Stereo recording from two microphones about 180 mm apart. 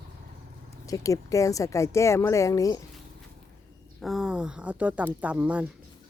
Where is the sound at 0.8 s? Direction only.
20° left (ahead or behind).